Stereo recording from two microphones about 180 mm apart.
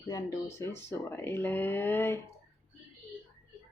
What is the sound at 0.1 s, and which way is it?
Speech, 15° left (ahead or behind).